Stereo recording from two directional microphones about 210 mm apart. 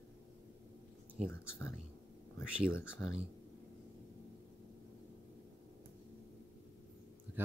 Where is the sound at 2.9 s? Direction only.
5° right (ahead or behind).